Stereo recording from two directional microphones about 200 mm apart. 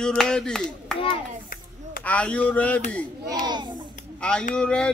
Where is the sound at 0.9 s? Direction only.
25° left (ahead or behind).